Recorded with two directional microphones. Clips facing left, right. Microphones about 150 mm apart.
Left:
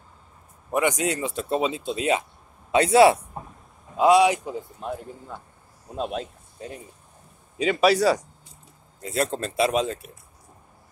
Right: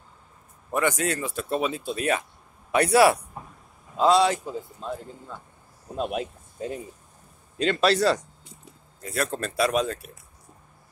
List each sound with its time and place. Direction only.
0.7 s a man's voice: 15° left (ahead or behind)
5.9 s speech: 5° right (ahead or behind)
7.5 s a man's voice: 10° left (ahead or behind)
9.0 s speech: 25° left (ahead or behind)